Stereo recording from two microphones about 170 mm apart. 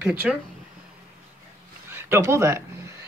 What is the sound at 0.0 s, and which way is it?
Speech, 10° right (ahead or behind).